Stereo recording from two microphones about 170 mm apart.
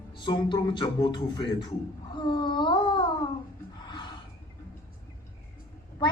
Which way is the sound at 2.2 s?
25° left (ahead or behind).